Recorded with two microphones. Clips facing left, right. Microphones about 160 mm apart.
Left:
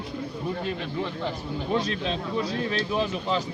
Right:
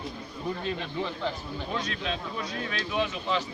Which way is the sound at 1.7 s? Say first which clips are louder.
Left 6 dB; 30° left (ahead or behind).